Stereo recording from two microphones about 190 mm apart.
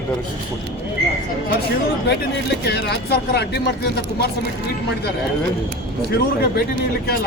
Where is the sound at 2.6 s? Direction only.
60° left (ahead or behind).